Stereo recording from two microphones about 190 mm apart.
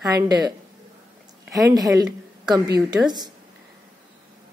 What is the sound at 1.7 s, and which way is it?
Speech, centre (ahead or behind).